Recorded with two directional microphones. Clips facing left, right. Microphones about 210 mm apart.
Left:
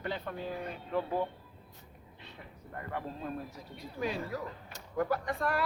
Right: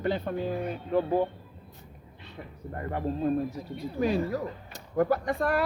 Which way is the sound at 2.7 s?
35° right (ahead or behind).